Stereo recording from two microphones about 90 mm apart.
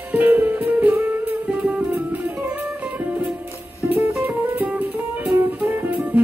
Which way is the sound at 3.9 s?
25° right (ahead or behind).